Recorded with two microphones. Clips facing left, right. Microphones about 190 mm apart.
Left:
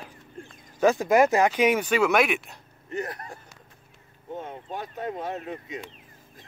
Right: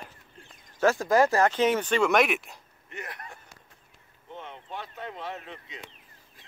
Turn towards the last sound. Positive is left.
turn(degrees=40)  # may be behind; listen again after turning